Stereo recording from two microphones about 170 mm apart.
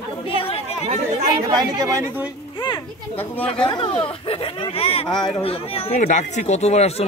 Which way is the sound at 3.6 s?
30° left (ahead or behind).